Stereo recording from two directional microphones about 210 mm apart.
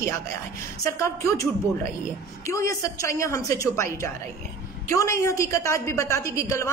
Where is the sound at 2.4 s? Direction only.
15° left (ahead or behind).